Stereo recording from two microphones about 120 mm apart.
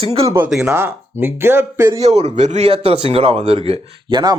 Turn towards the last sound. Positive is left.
turn(degrees=-40)  # may be behind; listen again after turning